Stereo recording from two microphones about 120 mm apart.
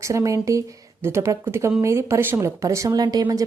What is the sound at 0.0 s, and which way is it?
Speech, 25° right (ahead or behind).